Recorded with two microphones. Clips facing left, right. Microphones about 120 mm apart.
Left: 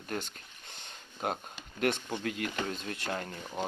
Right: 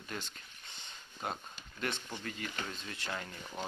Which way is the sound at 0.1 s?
50° left (ahead or behind).